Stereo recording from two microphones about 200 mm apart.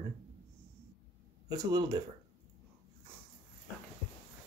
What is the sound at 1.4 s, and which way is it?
Speech, 20° right (ahead or behind).